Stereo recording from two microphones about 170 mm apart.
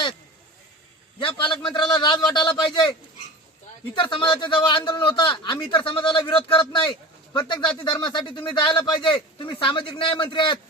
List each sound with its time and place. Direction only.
1.2 s speech: 30° left (ahead or behind)
3.9 s speech: 30° left (ahead or behind)